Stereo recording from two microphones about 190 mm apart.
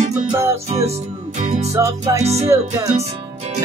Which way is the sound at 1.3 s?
35° right (ahead or behind).